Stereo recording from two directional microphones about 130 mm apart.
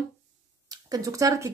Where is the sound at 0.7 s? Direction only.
25° right (ahead or behind).